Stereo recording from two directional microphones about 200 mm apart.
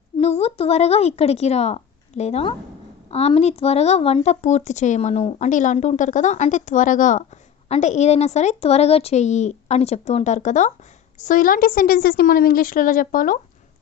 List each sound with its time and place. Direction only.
0.2 s a woman's voice: 30° left (ahead or behind)